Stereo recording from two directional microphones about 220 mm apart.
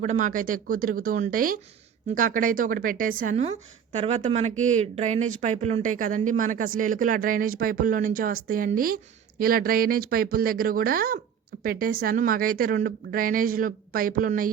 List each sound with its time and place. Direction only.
0.0 s speech: 35° right (ahead or behind)